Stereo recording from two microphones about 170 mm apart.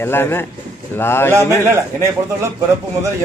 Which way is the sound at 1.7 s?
15° right (ahead or behind).